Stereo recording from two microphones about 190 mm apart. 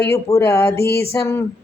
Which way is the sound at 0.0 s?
15° left (ahead or behind).